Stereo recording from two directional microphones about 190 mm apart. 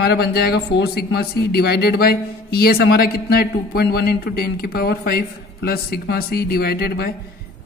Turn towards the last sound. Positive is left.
turn(degrees=55)  # may be behind; listen again after turning